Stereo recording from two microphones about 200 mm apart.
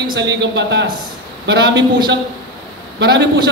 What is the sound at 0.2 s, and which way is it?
A man's voice, 60° right (ahead or behind).